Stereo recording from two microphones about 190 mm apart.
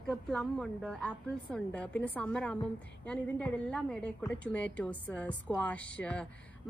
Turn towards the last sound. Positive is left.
turn(degrees=5)  # may be behind; listen again after turning